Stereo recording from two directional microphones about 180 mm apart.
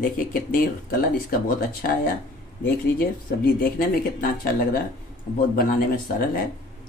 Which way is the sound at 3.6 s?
55° left (ahead or behind).